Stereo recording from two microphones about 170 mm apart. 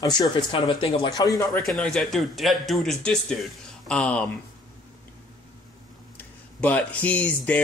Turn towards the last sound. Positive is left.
turn(degrees=10)  # may be behind; listen again after turning